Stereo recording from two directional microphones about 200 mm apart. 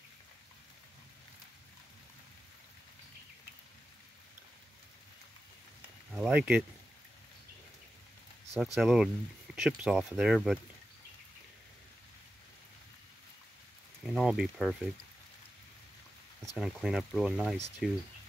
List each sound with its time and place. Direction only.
6.1 s speech: 5° right (ahead or behind)
8.5 s speech: centre (ahead or behind)
14.0 s speech: centre (ahead or behind)
16.5 s speech: centre (ahead or behind)